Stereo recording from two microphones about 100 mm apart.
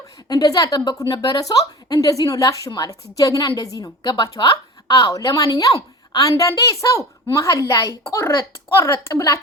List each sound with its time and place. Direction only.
0.3 s a woman's voice: 40° left (ahead or behind)